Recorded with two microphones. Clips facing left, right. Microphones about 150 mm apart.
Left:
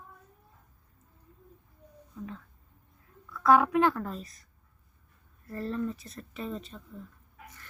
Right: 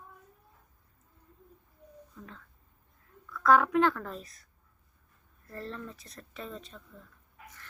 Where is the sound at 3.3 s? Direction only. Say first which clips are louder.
Left 1 dB; 10° left (ahead or behind).